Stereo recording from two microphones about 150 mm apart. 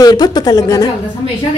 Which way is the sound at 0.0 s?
25° left (ahead or behind).